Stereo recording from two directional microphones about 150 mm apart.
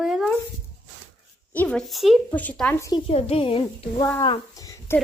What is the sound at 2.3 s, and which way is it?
Speech, 10° left (ahead or behind).